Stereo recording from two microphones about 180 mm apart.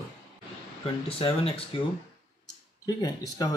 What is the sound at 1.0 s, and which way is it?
Speech, 30° left (ahead or behind).